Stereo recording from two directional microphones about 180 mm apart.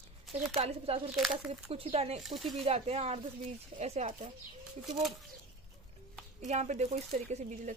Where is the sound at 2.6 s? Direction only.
35° right (ahead or behind).